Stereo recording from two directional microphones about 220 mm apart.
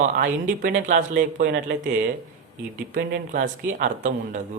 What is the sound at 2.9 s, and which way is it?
Speech, 40° right (ahead or behind).